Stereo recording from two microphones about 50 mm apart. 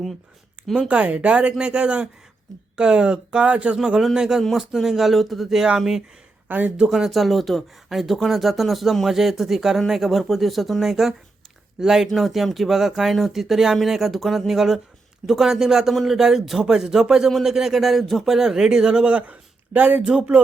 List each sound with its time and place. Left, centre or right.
0.9 s speech: right; by 5.6 s centre
6.5 s speech: right
6.8 s speech: centre; by 20.4 s right